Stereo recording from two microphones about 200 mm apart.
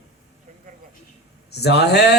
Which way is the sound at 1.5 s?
55° left (ahead or behind).